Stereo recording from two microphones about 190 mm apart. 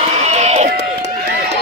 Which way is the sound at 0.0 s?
35° right (ahead or behind).